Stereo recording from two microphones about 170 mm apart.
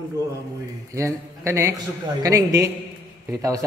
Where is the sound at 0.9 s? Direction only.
15° right (ahead or behind).